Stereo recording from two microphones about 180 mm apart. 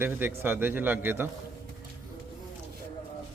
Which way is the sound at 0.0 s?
10° right (ahead or behind).